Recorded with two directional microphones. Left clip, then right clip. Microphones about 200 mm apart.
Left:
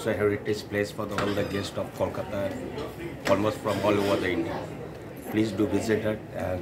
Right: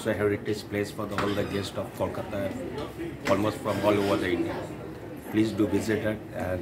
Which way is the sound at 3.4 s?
5° left (ahead or behind).